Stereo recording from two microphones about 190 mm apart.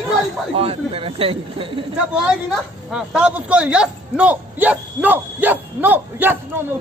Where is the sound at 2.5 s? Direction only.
5° right (ahead or behind).